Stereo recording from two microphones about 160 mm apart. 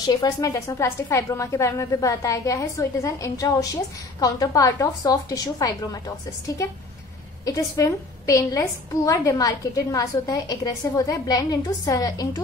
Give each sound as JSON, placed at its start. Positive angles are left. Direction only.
{"t": 0.0, "sound": "a woman's voice", "side_deg": 25}